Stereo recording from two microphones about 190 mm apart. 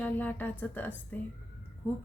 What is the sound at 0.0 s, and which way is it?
A woman's voice, 10° left (ahead or behind).